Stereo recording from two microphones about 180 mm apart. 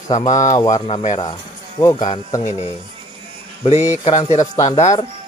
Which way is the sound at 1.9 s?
40° left (ahead or behind).